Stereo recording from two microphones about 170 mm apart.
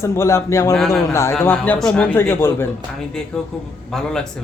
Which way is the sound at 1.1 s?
15° left (ahead or behind).